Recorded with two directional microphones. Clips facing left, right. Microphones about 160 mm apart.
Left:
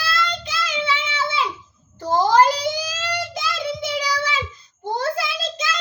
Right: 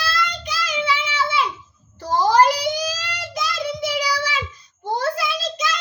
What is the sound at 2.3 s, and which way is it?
Child singing, 25° left (ahead or behind).